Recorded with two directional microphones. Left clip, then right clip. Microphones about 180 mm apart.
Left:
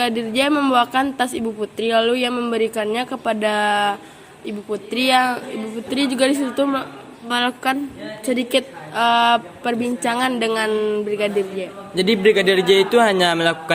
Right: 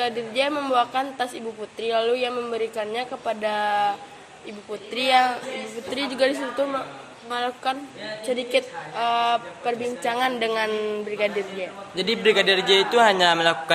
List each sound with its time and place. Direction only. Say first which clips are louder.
0.0 s a woman's voice: left 4 dB; 40° left (ahead or behind)
7.3 s a woman's voice: left 6 dB; 40° left (ahead or behind); by 11.7 s 15° left (ahead or behind)
11.9 s speech: left 4 dB; 40° left (ahead or behind)